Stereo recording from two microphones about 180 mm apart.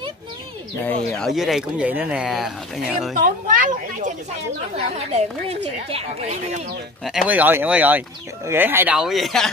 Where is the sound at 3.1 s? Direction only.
45° right (ahead or behind).